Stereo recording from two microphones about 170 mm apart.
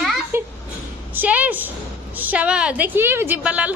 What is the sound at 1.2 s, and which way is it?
A woman's voice, 10° right (ahead or behind).